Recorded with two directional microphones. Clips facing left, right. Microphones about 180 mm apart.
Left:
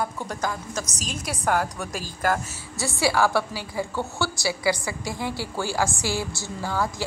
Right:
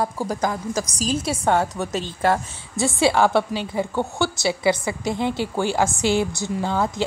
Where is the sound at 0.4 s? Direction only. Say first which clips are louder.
Right 4 dB; 30° right (ahead or behind).